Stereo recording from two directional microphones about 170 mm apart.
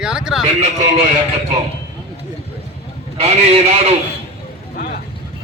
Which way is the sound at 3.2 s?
40° right (ahead or behind).